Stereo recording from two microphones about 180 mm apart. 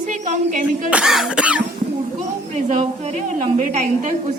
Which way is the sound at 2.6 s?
45° right (ahead or behind).